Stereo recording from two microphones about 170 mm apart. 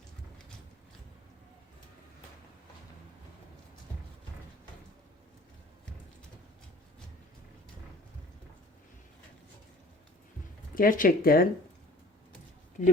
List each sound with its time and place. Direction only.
10.8 s speech: 55° left (ahead or behind)
12.8 s speech: 45° left (ahead or behind)